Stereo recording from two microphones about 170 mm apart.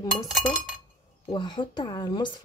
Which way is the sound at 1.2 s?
25° left (ahead or behind).